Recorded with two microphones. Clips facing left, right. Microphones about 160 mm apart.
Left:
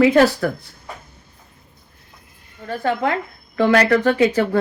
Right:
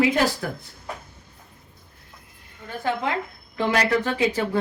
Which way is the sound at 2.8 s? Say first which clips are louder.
Left 4 dB; 55° left (ahead or behind).